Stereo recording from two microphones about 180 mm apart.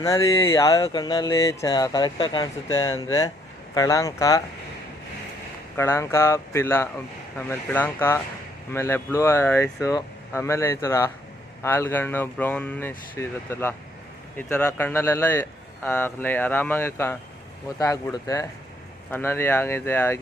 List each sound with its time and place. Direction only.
0.0 s speech: 20° left (ahead or behind)
5.7 s speech: 15° left (ahead or behind)